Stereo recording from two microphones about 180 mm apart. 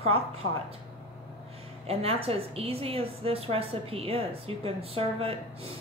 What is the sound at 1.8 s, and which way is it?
A woman's voice, 35° right (ahead or behind).